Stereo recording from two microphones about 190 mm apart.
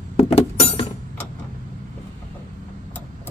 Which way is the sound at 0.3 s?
35° left (ahead or behind).